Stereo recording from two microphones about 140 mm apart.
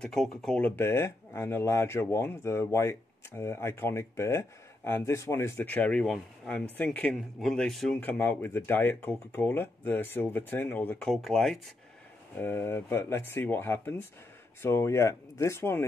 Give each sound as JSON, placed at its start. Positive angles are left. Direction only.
{"t": 0.0, "sound": "speech", "side_deg": 5}
{"t": 11.1, "sound": "speech", "side_deg": 0}
{"t": 12.4, "sound": "speech", "side_deg": 15}